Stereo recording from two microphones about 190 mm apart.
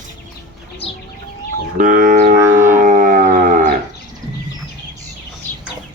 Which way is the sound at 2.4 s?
10° right (ahead or behind).